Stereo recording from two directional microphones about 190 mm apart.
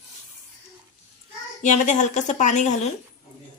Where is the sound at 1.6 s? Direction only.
40° left (ahead or behind).